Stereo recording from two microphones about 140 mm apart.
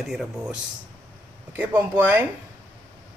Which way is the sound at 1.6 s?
10° right (ahead or behind).